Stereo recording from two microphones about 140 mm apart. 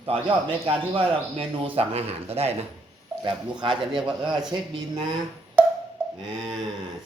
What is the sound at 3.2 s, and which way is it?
Speech, 35° right (ahead or behind).